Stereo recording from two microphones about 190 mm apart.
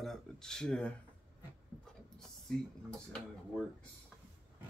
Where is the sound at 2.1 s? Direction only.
Centre (ahead or behind).